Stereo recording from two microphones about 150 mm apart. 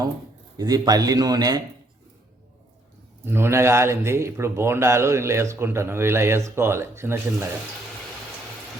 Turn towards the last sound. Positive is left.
turn(degrees=-15)  # may be behind; listen again after turning